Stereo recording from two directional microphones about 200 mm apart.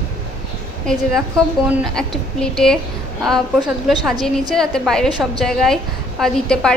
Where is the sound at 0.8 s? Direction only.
5° left (ahead or behind).